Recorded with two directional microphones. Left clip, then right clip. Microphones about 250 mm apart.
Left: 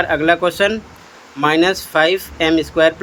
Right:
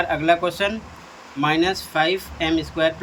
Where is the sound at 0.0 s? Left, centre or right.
Centre.